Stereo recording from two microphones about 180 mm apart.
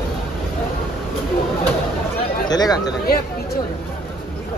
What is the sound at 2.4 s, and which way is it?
Chatter, 20° left (ahead or behind).